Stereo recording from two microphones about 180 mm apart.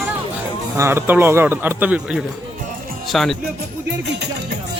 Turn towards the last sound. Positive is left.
turn(degrees=-70)  # may be behind; listen again after turning